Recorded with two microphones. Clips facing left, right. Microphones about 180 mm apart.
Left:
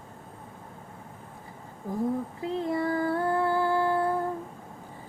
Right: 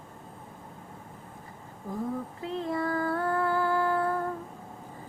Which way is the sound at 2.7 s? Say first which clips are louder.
Left 2 dB; 15° left (ahead or behind).